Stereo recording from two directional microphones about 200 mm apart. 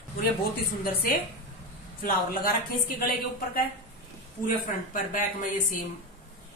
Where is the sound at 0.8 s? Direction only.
45° left (ahead or behind).